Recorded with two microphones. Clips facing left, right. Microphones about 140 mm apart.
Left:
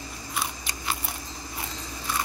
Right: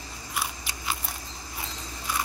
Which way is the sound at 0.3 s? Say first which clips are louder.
Even; 5° right (ahead or behind).